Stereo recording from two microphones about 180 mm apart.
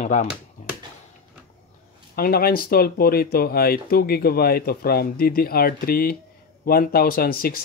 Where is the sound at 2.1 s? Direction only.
55° left (ahead or behind).